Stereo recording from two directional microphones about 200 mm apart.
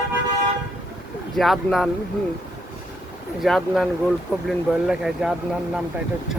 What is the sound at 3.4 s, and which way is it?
Speech, centre (ahead or behind).